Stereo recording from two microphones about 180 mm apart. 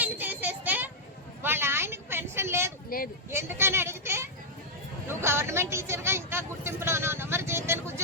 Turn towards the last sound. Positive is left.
turn(degrees=-15)  # may be behind; listen again after turning